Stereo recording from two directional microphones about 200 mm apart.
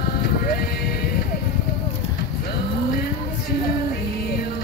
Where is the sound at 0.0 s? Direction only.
50° left (ahead or behind).